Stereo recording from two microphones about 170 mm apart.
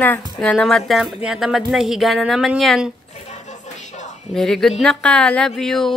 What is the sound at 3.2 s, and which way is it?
Music, 40° left (ahead or behind).